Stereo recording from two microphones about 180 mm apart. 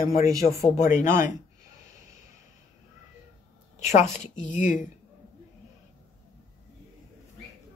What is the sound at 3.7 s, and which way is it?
A woman's voice, 40° left (ahead or behind).